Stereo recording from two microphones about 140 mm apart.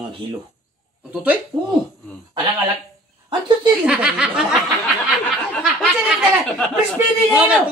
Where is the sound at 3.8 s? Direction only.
5° right (ahead or behind).